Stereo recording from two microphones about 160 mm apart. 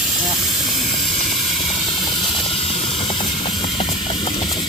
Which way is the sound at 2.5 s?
40° left (ahead or behind).